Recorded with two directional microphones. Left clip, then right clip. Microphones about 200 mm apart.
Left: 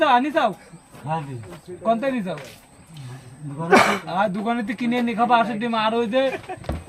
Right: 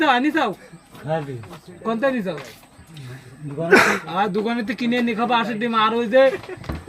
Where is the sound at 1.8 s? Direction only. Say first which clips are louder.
Even; 10° left (ahead or behind).